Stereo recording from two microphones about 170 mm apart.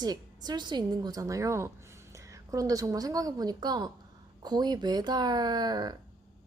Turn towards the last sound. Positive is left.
turn(degrees=-25)  # may be behind; listen again after turning